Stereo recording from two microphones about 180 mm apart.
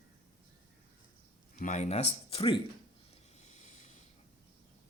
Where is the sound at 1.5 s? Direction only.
45° left (ahead or behind).